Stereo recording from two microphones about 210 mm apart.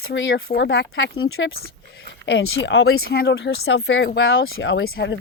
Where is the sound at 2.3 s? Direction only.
65° left (ahead or behind).